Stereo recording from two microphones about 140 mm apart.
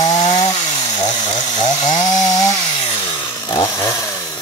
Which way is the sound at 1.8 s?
60° left (ahead or behind).